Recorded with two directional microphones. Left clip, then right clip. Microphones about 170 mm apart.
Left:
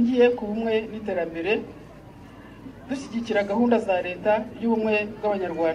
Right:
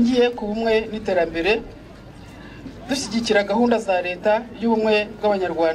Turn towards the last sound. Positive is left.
turn(degrees=-30)  # may be behind; listen again after turning